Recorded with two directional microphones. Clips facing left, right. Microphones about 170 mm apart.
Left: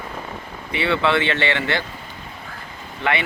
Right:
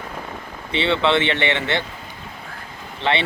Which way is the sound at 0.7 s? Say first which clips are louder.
Right 1 dB; 25° right (ahead or behind).